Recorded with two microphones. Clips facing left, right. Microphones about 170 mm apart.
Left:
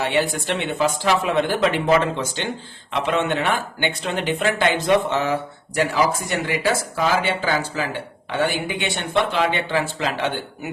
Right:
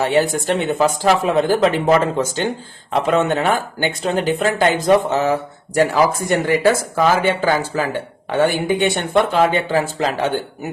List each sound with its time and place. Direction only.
0.0 s speech: 40° right (ahead or behind)